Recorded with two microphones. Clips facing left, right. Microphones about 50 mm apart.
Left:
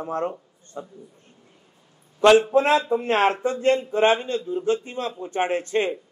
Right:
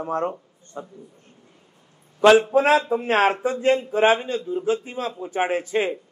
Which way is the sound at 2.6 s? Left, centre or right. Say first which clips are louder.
Right 1 dB; centre.